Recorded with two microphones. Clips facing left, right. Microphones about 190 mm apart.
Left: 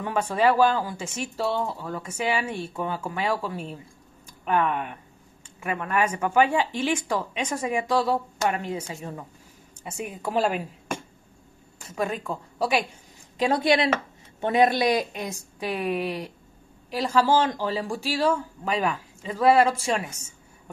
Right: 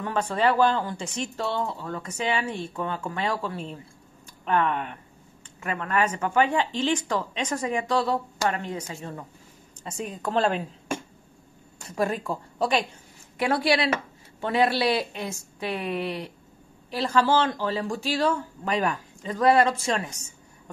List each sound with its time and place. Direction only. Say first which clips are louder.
0.0 s speech: left 2 dB; 10° left (ahead or behind)
11.9 s speech: right 2 dB; centre (ahead or behind)
13.4 s a woman's voice: left 2 dB; 20° left (ahead or behind)